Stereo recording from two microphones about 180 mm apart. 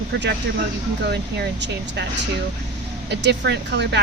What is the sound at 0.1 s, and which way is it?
Speech, 70° right (ahead or behind).